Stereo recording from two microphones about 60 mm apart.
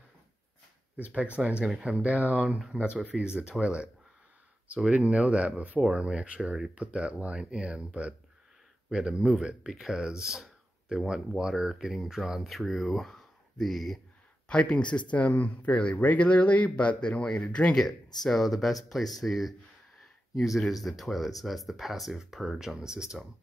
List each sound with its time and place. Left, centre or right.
1.1 s speech: right
5.8 s speech: centre
14.5 s speech: centre
17.7 s speech: centre
20.8 s speech: centre